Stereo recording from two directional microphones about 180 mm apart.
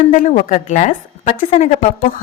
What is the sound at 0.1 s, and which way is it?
A woman's voice, 45° left (ahead or behind).